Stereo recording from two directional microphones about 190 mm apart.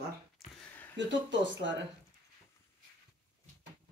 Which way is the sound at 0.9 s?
75° right (ahead or behind).